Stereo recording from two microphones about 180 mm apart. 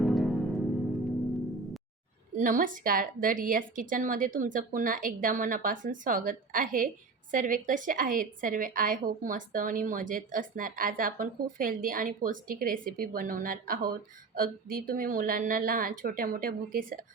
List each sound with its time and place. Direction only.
0.0 s music: centre (ahead or behind)
2.3 s a woman's voice: 45° right (ahead or behind)